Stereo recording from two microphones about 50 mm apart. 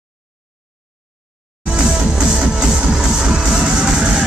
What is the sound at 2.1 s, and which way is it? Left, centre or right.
Music, centre.